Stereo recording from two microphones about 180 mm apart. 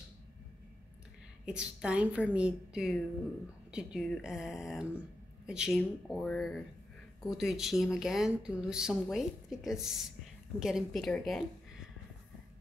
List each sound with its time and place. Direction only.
1.4 s speech: 5° right (ahead or behind)